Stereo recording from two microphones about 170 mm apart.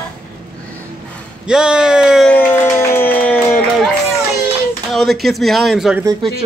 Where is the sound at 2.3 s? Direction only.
10° left (ahead or behind).